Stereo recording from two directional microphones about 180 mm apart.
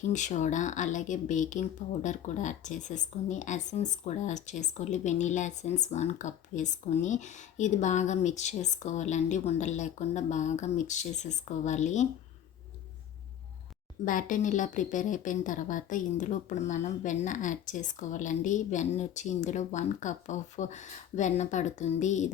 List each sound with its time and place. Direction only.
0.1 s speech: 45° left (ahead or behind)
14.0 s a woman's voice: 50° left (ahead or behind)